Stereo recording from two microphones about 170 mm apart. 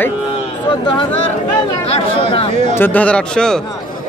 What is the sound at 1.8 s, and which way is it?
Speech, 35° left (ahead or behind).